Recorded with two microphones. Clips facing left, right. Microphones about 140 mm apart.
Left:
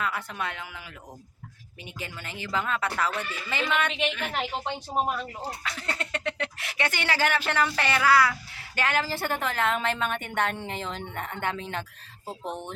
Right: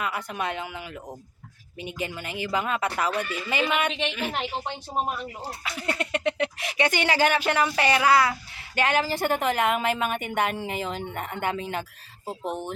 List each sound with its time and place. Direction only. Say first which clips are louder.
0.0 s speech: right 2 dB; 15° right (ahead or behind)
1.8 s speech: right 7 dB; 20° right (ahead or behind)
5.6 s speech: right 4 dB; 10° right (ahead or behind)